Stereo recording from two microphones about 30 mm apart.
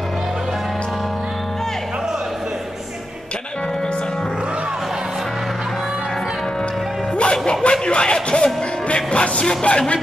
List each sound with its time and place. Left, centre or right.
7.2 s music: left
7.7 s a sound: left
8.8 s music: left